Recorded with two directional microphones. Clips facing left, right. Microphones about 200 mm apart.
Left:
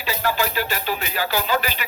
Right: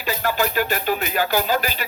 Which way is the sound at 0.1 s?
50° right (ahead or behind).